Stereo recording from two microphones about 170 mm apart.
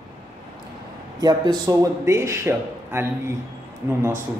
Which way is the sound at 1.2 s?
25° right (ahead or behind).